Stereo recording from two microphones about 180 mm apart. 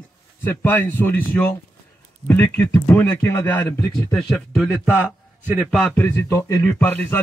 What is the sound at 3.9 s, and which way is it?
Speech, 25° left (ahead or behind).